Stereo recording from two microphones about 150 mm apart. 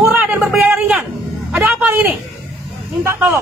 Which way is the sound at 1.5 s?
10° right (ahead or behind).